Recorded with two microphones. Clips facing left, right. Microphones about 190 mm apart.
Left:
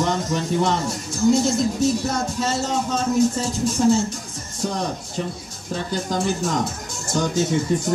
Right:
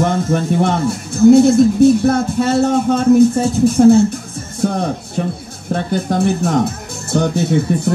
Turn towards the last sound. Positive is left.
turn(degrees=-60)  # may be behind; listen again after turning